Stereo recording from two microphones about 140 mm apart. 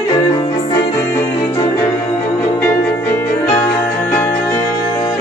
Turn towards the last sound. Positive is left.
turn(degrees=20)  # may be behind; listen again after turning